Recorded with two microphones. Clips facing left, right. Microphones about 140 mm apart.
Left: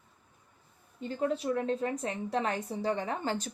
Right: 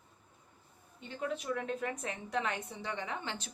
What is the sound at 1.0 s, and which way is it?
A woman's voice, 35° left (ahead or behind).